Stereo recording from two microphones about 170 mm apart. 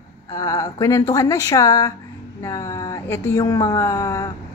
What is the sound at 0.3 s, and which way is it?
Speech, 20° left (ahead or behind).